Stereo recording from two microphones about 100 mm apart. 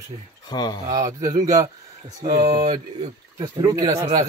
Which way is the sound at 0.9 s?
40° right (ahead or behind).